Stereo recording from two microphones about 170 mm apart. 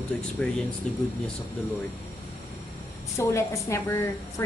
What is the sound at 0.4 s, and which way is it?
Speech, 10° left (ahead or behind).